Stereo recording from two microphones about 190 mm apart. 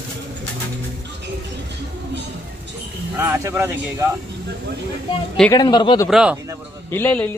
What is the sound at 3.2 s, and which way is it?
Speech, 10° right (ahead or behind).